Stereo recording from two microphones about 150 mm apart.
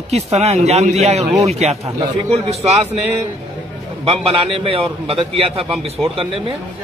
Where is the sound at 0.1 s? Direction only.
45° right (ahead or behind).